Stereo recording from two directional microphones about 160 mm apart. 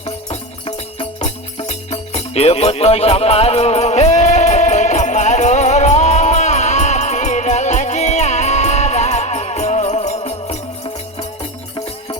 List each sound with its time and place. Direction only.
0.0 s music: 35° left (ahead or behind)